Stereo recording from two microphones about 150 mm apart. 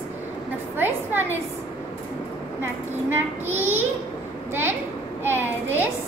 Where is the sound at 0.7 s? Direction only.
15° right (ahead or behind).